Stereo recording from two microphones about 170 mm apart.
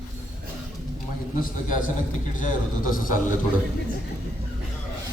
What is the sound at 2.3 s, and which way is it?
Mantra, 50° left (ahead or behind).